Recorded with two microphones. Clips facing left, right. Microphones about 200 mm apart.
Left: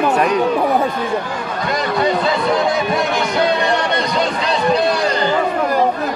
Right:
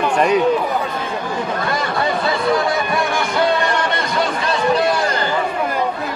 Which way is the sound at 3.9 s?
20° left (ahead or behind).